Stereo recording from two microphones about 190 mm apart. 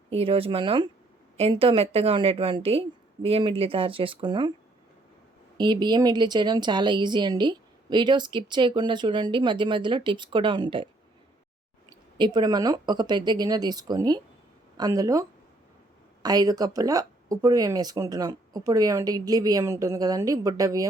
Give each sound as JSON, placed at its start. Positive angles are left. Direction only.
{"t": 0.1, "sound": "a woman's voice", "side_deg": -30}
{"t": 5.5, "sound": "a woman's voice", "side_deg": -25}
{"t": 12.1, "sound": "a woman's voice", "side_deg": -25}